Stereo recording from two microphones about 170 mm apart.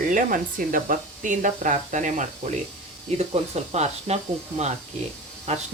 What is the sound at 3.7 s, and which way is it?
Speech, 40° right (ahead or behind).